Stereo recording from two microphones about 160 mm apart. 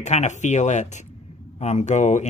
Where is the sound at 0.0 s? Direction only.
45° left (ahead or behind).